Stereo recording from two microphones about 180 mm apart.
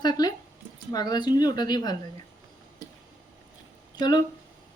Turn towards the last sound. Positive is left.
turn(degrees=25)  # may be behind; listen again after turning